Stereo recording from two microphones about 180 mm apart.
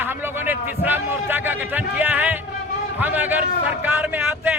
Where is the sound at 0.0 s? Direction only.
10° right (ahead or behind).